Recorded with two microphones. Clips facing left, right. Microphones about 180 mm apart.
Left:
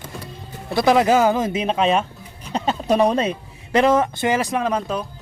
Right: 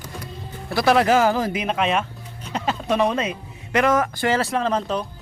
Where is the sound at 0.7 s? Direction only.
20° left (ahead or behind).